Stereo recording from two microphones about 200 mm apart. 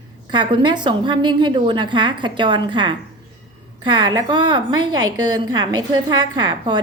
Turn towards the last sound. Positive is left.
turn(degrees=-20)  # may be behind; listen again after turning